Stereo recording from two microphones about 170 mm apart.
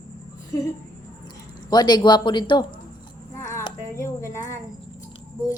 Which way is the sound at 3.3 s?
15° left (ahead or behind).